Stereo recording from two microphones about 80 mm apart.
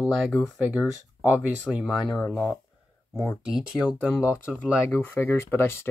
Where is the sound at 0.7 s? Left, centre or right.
Centre.